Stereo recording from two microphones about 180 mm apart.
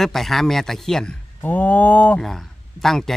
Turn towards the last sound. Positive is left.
turn(degrees=0)  # may be behind; listen again after turning